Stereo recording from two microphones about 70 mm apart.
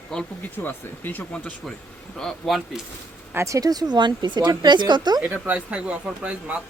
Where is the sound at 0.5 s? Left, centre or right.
Left.